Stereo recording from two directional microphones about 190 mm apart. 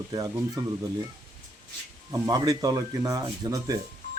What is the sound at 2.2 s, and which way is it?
A man's voice, 20° right (ahead or behind).